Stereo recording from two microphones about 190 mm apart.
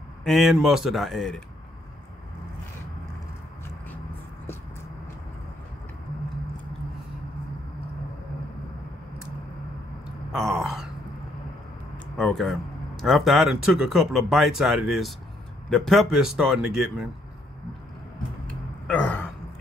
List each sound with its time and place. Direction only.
0.2 s speech: centre (ahead or behind)
10.3 s a sound: centre (ahead or behind)
12.2 s speech: centre (ahead or behind)
18.9 s gasp: 5° left (ahead or behind)